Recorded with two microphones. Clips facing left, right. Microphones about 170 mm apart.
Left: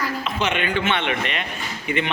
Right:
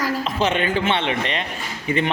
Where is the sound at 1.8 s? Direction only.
35° right (ahead or behind).